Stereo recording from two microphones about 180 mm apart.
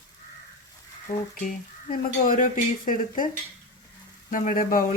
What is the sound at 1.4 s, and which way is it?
Speech, 50° left (ahead or behind).